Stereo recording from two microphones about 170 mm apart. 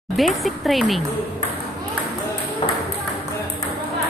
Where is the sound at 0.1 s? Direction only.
Centre (ahead or behind).